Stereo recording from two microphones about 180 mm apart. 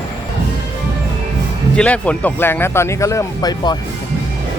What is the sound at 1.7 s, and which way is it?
Speech, 10° left (ahead or behind).